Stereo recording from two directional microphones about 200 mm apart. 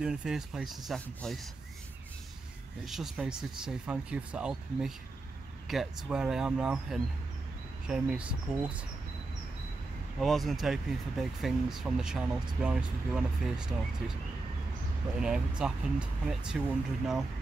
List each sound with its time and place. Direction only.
0.0 s speech: 5° right (ahead or behind)
2.8 s speech: centre (ahead or behind)
10.1 s speech: centre (ahead or behind)
15.1 s speech: 5° right (ahead or behind)